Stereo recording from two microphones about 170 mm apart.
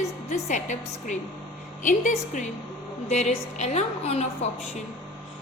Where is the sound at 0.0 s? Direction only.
45° left (ahead or behind).